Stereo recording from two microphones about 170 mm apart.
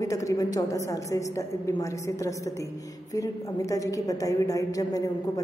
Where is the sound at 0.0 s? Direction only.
20° left (ahead or behind).